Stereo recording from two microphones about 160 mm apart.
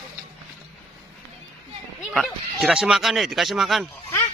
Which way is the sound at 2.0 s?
Centre (ahead or behind).